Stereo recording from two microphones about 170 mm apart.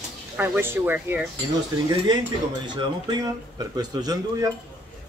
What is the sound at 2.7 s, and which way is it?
Speech, 25° right (ahead or behind).